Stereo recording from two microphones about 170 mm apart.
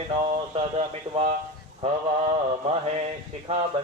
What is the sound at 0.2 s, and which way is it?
Speech, 35° right (ahead or behind).